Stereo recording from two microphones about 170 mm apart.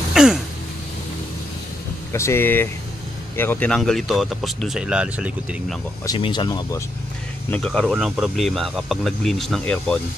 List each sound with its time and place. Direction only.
0.1 s a sound: 5° right (ahead or behind)
2.1 s speech: 15° left (ahead or behind); by 5.8 s 5° right (ahead or behind)
6.0 s speech: 30° left (ahead or behind)
7.5 s speech: 5° left (ahead or behind)